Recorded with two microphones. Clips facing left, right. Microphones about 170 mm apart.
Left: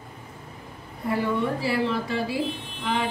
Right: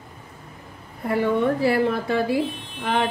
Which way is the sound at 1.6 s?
55° right (ahead or behind).